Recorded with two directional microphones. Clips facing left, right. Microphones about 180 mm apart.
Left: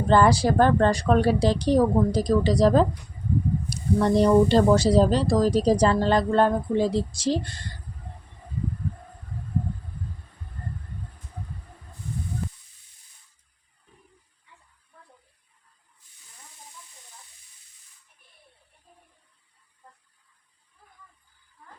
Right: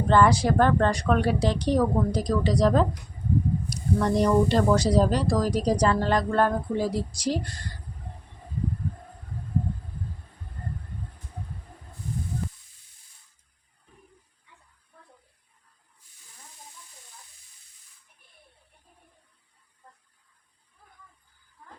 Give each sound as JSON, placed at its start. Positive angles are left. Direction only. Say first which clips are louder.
{"t": 0.1, "sound": "a woman's voice", "louder": "left 2 dB", "side_deg": 35}